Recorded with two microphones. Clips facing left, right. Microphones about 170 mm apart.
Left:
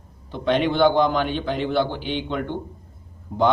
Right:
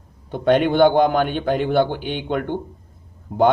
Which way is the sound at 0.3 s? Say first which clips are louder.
Right 4 dB; 50° right (ahead or behind).